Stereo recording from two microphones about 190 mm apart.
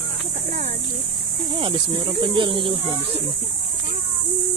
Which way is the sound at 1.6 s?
30° right (ahead or behind).